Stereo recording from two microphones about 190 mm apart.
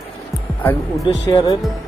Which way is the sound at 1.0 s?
20° left (ahead or behind).